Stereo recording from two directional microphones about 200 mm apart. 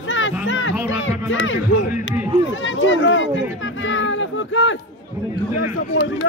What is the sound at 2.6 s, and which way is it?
Speech, 70° left (ahead or behind).